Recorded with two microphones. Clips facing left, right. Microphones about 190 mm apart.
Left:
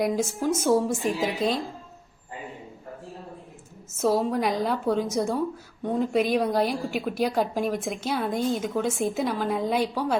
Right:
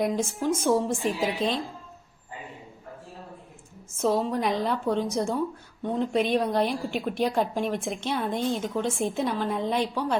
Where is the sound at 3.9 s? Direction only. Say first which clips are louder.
Left 2 dB; 5° left (ahead or behind).